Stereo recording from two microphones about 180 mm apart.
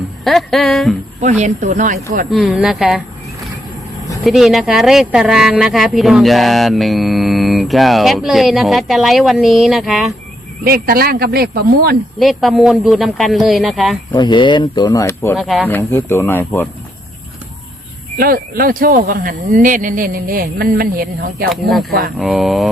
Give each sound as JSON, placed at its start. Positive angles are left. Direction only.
{"t": 0.3, "sound": "speech", "side_deg": 0}
{"t": 1.2, "sound": "speech", "side_deg": -40}
{"t": 2.3, "sound": "speech", "side_deg": 0}
{"t": 4.2, "sound": "speech", "side_deg": 0}
{"t": 10.6, "sound": "speech", "side_deg": -55}
{"t": 12.2, "sound": "speech", "side_deg": 0}
{"t": 14.1, "sound": "speech", "side_deg": 25}
{"t": 15.4, "sound": "speech", "side_deg": 0}
{"t": 15.6, "sound": "speech", "side_deg": 10}
{"t": 18.2, "sound": "speech", "side_deg": -55}
{"t": 21.5, "sound": "speech", "side_deg": 0}